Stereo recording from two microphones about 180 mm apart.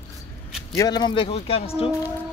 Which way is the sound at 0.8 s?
25° left (ahead or behind).